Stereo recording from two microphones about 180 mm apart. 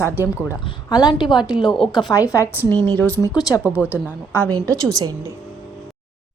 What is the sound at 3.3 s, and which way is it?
A woman's voice, 20° left (ahead or behind).